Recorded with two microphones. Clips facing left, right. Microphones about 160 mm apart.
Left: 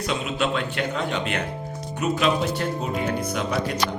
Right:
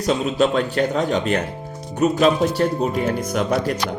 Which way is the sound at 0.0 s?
40° right (ahead or behind).